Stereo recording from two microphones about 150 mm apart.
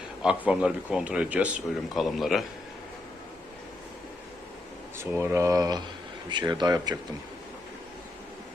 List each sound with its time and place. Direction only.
0.2 s a man's voice: 5° right (ahead or behind)
4.9 s speech: 15° right (ahead or behind)